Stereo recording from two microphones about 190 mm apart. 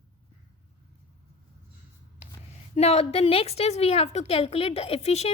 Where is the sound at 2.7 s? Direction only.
35° left (ahead or behind).